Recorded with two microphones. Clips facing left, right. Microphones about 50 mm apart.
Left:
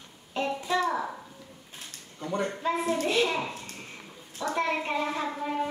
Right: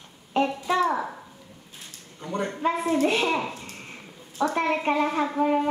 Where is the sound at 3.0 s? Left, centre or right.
Right.